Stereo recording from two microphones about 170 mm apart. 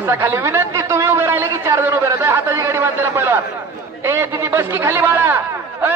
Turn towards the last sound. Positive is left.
turn(degrees=-10)  # may be behind; listen again after turning